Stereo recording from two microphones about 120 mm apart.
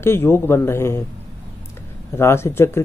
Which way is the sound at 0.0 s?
20° left (ahead or behind).